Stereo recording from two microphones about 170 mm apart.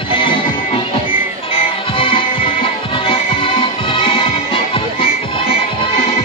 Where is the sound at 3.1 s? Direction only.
30° left (ahead or behind).